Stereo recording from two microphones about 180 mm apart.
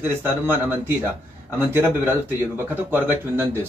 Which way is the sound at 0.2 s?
10° right (ahead or behind).